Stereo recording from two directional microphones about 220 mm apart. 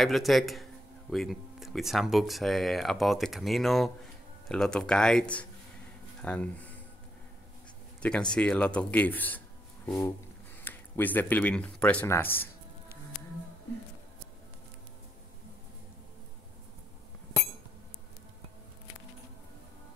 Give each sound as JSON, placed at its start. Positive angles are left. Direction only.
{"t": 0.0, "sound": "speech", "side_deg": 0}
{"t": 8.0, "sound": "speech", "side_deg": 5}
{"t": 10.6, "sound": "speech", "side_deg": 10}